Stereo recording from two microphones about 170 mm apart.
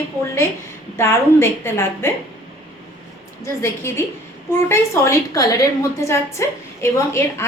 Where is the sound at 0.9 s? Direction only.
15° left (ahead or behind).